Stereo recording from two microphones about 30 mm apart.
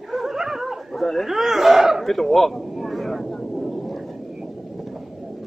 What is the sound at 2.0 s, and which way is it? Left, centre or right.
Speech, centre.